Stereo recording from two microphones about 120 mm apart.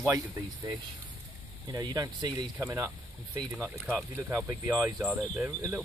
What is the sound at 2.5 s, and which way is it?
Speech, 25° right (ahead or behind).